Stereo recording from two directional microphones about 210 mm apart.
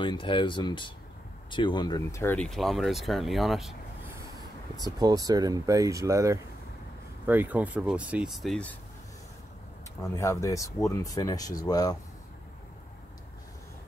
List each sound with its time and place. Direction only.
0.0 s speech: 25° left (ahead or behind); by 3.7 s centre (ahead or behind)
4.9 s speech: 15° right (ahead or behind); by 8.7 s 5° left (ahead or behind)
9.9 s speech: 15° left (ahead or behind)